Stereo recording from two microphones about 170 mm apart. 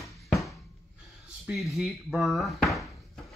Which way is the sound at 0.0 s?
20° left (ahead or behind).